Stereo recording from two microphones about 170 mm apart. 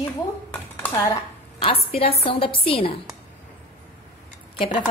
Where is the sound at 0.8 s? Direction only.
20° left (ahead or behind).